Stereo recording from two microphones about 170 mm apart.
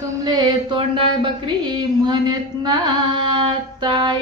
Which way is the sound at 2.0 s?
25° right (ahead or behind).